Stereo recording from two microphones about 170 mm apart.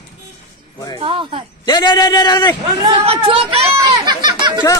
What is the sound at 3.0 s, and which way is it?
Speech, 35° right (ahead or behind).